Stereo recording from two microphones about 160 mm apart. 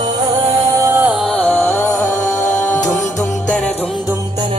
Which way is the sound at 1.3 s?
10° left (ahead or behind).